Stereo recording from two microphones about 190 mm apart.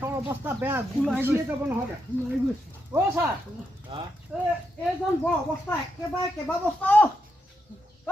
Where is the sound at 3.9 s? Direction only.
25° right (ahead or behind).